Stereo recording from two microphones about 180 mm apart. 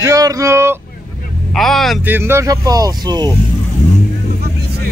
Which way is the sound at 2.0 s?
10° right (ahead or behind).